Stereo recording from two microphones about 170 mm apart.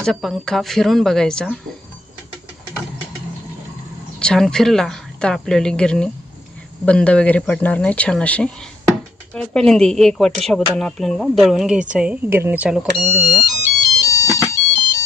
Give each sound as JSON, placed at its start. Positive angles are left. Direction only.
{"t": 0.0, "sound": "speech", "side_deg": 0}
{"t": 4.2, "sound": "speech", "side_deg": 5}
{"t": 14.1, "sound": "alarm", "side_deg": 20}